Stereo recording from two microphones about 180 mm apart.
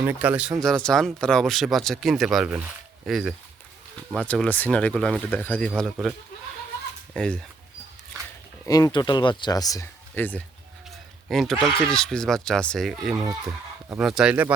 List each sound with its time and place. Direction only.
0.0 s speech: 10° right (ahead or behind)
8.6 s speech: 20° left (ahead or behind); by 14.5 s 5° right (ahead or behind)